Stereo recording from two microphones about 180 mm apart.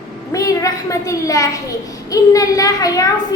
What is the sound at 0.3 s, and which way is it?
A child's voice, 20° left (ahead or behind).